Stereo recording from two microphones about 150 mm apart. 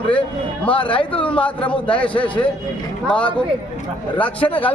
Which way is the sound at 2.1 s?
35° left (ahead or behind).